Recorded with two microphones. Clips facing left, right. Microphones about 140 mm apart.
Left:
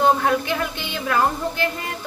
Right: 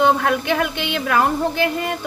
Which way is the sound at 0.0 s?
75° right (ahead or behind).